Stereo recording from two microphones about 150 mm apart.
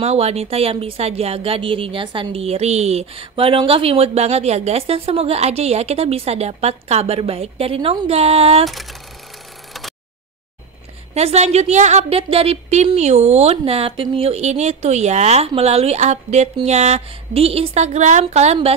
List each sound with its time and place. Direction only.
0.0 s a woman's voice: 45° right (ahead or behind)
11.1 s a woman's voice: 45° right (ahead or behind)